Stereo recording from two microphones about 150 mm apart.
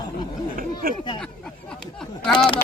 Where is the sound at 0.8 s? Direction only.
80° right.